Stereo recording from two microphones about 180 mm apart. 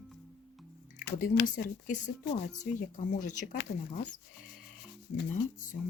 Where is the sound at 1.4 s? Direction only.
45° left (ahead or behind).